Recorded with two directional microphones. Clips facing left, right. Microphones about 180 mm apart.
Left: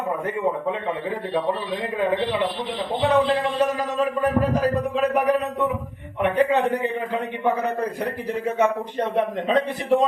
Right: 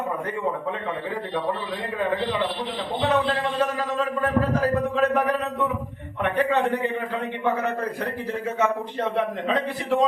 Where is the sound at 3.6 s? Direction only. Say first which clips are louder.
Left 3 dB; 15° left (ahead or behind).